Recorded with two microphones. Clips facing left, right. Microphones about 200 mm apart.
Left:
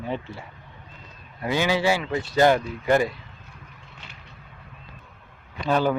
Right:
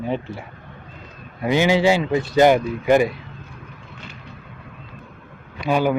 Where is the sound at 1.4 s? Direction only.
20° right (ahead or behind).